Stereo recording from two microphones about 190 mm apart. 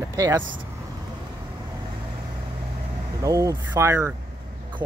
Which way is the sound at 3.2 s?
15° right (ahead or behind).